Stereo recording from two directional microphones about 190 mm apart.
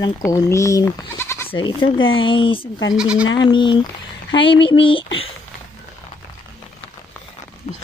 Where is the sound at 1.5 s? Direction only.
25° left (ahead or behind).